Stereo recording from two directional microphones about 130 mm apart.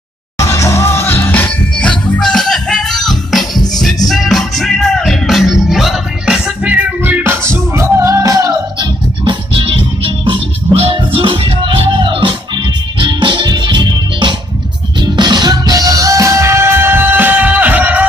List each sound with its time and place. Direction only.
0.4 s music: 25° left (ahead or behind); by 8.8 s 25° right (ahead or behind)
9.2 s music: 40° right (ahead or behind); by 18.0 s 10° right (ahead or behind)